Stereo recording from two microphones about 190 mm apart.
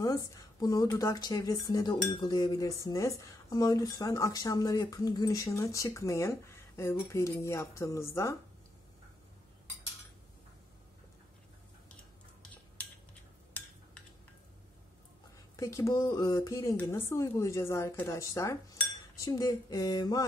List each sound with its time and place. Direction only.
0.0 s speech: 20° left (ahead or behind)
0.8 s dishes: 15° left (ahead or behind)
15.5 s dishes: 15° left (ahead or behind)
19.1 s speech: 20° left (ahead or behind)